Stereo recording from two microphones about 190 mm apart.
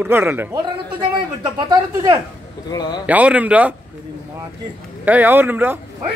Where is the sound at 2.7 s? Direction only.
20° left (ahead or behind).